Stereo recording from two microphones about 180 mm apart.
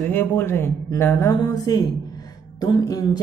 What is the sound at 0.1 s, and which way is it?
Speech, 10° left (ahead or behind).